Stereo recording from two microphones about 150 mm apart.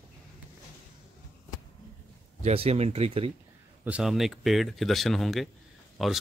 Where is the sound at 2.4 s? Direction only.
40° right (ahead or behind).